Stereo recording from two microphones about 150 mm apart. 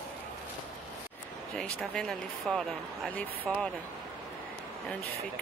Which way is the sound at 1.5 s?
5° left (ahead or behind).